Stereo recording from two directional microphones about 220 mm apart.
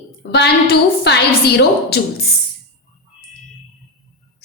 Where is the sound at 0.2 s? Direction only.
50° left (ahead or behind).